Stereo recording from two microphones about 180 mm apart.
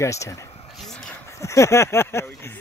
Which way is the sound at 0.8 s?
5° left (ahead or behind).